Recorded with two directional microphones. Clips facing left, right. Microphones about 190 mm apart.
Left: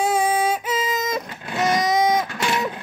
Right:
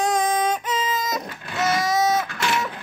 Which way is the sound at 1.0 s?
20° left (ahead or behind).